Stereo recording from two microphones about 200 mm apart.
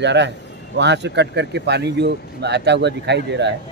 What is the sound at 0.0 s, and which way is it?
Speech, 60° right (ahead or behind).